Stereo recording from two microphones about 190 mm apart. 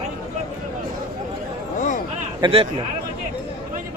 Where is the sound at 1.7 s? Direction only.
40° left (ahead or behind).